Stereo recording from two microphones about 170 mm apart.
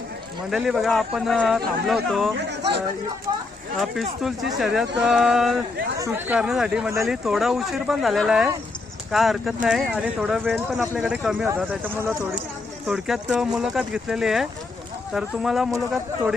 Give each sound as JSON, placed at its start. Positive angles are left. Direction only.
{"t": 0.5, "sound": "speech", "side_deg": -5}
{"t": 2.5, "sound": "speech", "side_deg": -85}
{"t": 4.2, "sound": "speech", "side_deg": 0}